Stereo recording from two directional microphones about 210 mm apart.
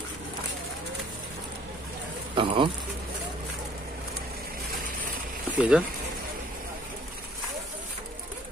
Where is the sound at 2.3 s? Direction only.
25° right (ahead or behind).